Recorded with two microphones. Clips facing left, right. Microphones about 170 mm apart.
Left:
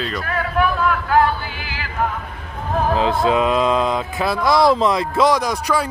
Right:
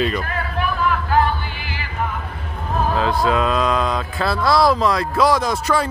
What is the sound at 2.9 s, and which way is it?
Speech, 20° left (ahead or behind).